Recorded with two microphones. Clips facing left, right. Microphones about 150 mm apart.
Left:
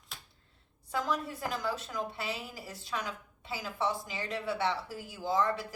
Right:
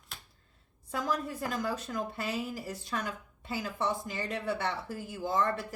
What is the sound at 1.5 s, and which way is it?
A woman's voice, 45° right (ahead or behind).